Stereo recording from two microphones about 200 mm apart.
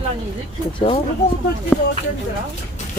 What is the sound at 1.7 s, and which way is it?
Speech, 5° left (ahead or behind).